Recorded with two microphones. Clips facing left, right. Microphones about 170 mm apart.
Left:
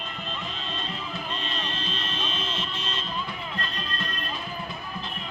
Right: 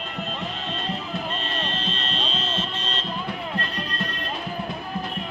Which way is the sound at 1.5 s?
65° right (ahead or behind).